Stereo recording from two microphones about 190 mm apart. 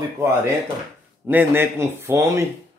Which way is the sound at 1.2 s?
10° right (ahead or behind).